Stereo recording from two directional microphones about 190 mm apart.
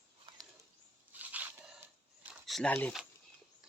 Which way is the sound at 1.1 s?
10° right (ahead or behind).